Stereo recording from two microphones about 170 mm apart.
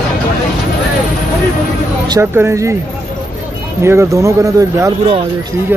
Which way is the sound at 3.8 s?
15° right (ahead or behind).